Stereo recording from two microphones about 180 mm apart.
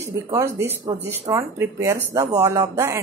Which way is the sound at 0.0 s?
15° right (ahead or behind).